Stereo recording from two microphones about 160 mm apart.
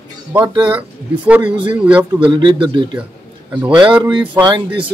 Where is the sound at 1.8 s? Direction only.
10° right (ahead or behind).